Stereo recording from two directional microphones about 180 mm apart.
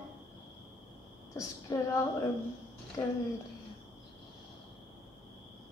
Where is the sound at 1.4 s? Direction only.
20° left (ahead or behind).